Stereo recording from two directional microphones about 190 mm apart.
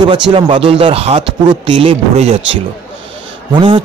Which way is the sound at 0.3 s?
30° right (ahead or behind).